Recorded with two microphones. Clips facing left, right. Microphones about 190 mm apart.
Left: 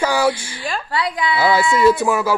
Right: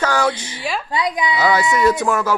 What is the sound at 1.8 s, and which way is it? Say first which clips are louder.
Speech: left 2 dB; 10° left (ahead or behind).